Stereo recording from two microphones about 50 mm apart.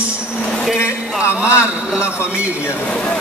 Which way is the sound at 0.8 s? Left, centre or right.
Left.